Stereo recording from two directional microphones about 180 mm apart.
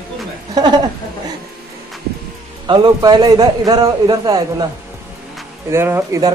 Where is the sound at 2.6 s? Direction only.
25° right (ahead or behind).